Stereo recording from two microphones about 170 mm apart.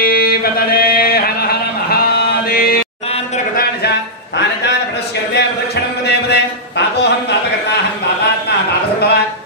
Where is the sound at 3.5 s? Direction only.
70° left (ahead or behind).